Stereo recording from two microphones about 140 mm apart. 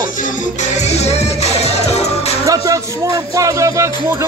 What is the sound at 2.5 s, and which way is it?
A man's voice, 25° right (ahead or behind).